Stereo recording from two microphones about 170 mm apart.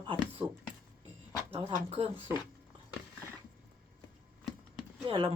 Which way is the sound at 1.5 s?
35° right (ahead or behind).